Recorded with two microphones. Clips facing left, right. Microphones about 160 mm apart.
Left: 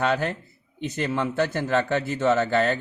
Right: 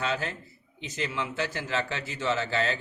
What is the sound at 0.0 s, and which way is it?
A man's voice, 55° left (ahead or behind).